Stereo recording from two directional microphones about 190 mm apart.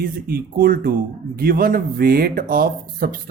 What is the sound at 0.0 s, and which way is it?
Speech, 50° right (ahead or behind).